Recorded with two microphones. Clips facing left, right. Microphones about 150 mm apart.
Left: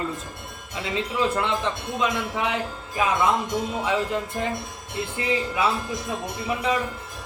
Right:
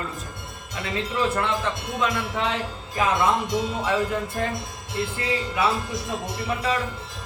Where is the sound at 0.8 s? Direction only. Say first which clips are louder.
Left 1 dB; 15° left (ahead or behind).